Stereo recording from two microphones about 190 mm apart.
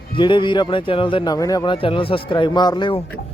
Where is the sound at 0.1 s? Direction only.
25° left (ahead or behind).